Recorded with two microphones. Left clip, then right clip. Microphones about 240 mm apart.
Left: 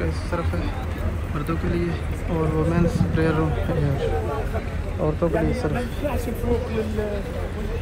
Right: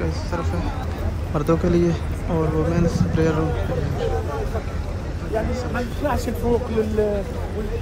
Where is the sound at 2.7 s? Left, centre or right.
Centre.